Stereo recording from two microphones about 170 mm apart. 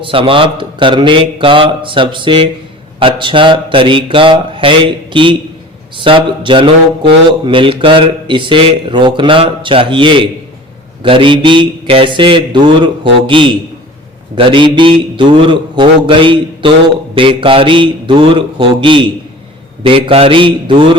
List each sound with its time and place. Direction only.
0.0 s a man's voice: 30° right (ahead or behind)